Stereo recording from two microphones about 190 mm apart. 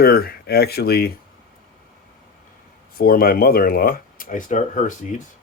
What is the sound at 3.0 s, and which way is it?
Speech, 50° left (ahead or behind).